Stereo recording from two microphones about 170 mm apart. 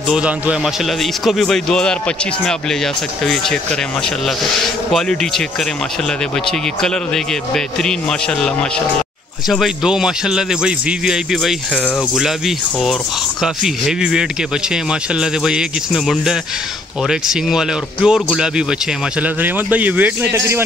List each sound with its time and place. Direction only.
0.1 s a man's voice: 5° right (ahead or behind)
9.5 s a man's voice: centre (ahead or behind)